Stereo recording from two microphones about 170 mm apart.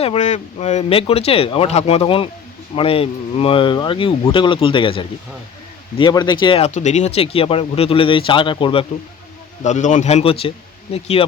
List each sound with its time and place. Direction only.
0.0 s a man's voice: 40° left (ahead or behind)
6.7 s speech: 45° left (ahead or behind)
9.6 s speech: 45° left (ahead or behind)